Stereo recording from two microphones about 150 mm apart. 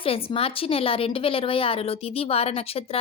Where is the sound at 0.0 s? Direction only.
40° left (ahead or behind).